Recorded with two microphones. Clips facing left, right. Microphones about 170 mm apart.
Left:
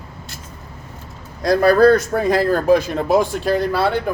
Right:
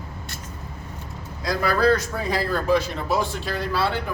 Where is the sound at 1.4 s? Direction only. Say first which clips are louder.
Left 9 dB; 50° left (ahead or behind).